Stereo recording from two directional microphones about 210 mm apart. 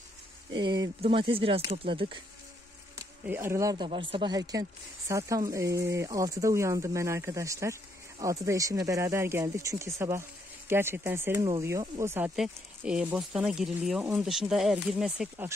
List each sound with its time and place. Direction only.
0.5 s speech: 20° right (ahead or behind)
3.0 s speech: 10° right (ahead or behind)